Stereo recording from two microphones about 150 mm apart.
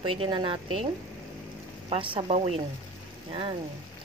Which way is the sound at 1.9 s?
35° right (ahead or behind).